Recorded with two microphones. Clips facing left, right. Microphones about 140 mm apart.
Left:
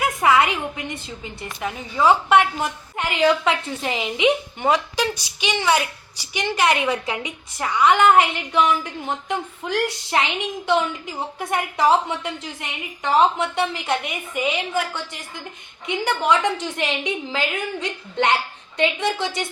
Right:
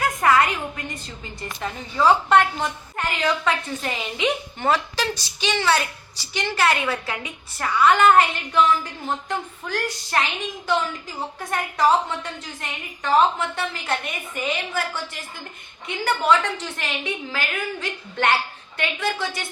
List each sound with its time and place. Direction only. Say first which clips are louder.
0.0 s a sound: left 1 dB; 15° left (ahead or behind)
1.0 s a woman's voice: left 1 dB; 10° left (ahead or behind)
15.9 s a woman's voice: even; 15° left (ahead or behind)